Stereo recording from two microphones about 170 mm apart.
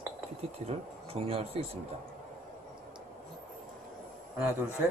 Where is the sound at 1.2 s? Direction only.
35° right (ahead or behind).